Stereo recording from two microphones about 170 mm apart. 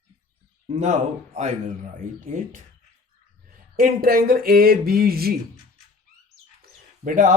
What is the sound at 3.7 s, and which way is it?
Speech, 55° right (ahead or behind).